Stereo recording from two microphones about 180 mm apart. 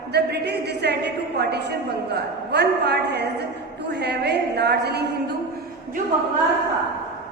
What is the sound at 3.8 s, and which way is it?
A woman's voice, 70° right (ahead or behind).